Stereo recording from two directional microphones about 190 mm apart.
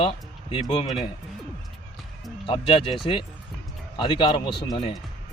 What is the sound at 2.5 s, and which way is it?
A man's voice, 25° left (ahead or behind).